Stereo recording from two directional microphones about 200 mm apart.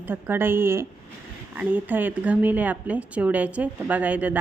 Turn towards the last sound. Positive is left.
turn(degrees=-5)  # may be behind; listen again after turning